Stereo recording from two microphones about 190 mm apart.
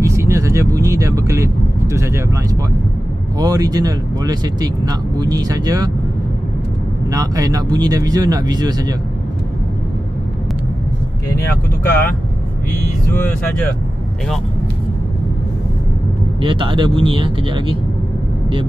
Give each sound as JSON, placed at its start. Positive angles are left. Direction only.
{"t": 0.0, "sound": "speech", "side_deg": -15}
{"t": 3.3, "sound": "speech", "side_deg": -20}
{"t": 7.1, "sound": "speech", "side_deg": -20}
{"t": 16.3, "sound": "speech", "side_deg": -25}